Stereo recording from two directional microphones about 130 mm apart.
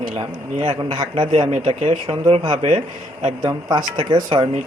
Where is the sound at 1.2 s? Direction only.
40° right (ahead or behind).